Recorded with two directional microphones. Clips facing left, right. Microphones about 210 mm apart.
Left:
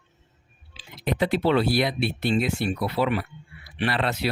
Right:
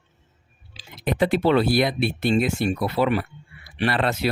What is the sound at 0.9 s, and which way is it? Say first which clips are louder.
Speech: right 3 dB; 50° right (ahead or behind).